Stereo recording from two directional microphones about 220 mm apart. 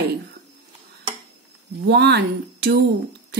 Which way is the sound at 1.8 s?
50° right (ahead or behind).